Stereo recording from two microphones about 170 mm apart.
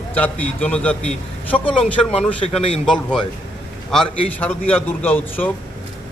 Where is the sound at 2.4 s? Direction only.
35° left (ahead or behind).